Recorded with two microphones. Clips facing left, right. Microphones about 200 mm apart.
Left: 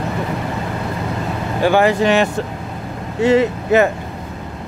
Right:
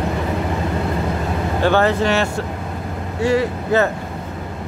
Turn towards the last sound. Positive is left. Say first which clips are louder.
# left 3 dB
turn(degrees=20)  # may be behind; listen again after turning